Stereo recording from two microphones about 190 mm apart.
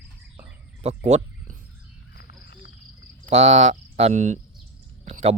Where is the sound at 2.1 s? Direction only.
55° left (ahead or behind).